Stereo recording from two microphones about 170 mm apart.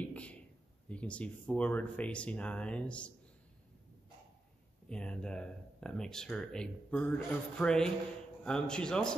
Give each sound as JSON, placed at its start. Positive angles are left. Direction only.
{"t": 0.0, "sound": "a sound", "side_deg": 10}
{"t": 0.8, "sound": "speech", "side_deg": 5}
{"t": 4.8, "sound": "speech", "side_deg": 5}